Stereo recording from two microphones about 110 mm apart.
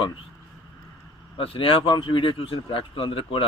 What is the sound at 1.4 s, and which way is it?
Speech, 55° left (ahead or behind).